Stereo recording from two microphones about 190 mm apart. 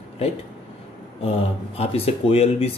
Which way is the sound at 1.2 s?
30° left (ahead or behind).